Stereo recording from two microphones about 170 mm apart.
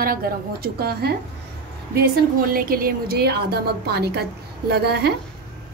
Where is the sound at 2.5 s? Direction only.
60° right (ahead or behind).